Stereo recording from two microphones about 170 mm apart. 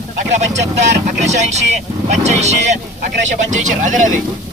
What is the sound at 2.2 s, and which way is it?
Speech, 40° right (ahead or behind).